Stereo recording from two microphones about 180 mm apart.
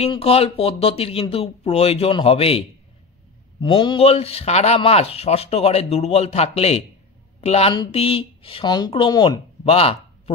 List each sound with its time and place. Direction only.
0.0 s speech: 30° left (ahead or behind)
3.6 s speech: 25° left (ahead or behind)